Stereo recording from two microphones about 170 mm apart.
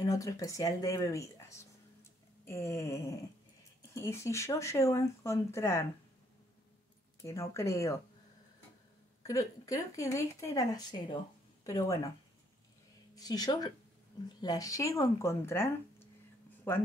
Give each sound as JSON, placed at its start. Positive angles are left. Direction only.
{"t": 0.0, "sound": "speech", "side_deg": 20}
{"t": 7.2, "sound": "speech", "side_deg": 15}
{"t": 9.2, "sound": "speech", "side_deg": 20}
{"t": 13.1, "sound": "speech", "side_deg": 20}